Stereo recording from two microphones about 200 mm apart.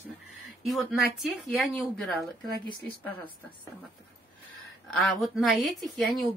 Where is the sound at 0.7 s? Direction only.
Centre (ahead or behind).